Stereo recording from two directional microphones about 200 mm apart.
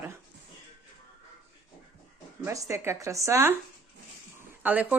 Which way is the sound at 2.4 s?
15° right (ahead or behind).